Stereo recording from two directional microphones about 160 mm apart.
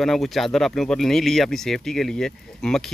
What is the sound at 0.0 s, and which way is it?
Speech, centre (ahead or behind).